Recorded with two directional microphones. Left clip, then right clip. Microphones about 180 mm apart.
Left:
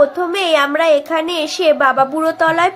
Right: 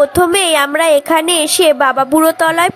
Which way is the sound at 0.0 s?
60° right (ahead or behind).